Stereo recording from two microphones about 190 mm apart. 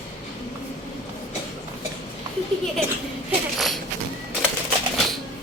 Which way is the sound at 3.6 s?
Centre (ahead or behind).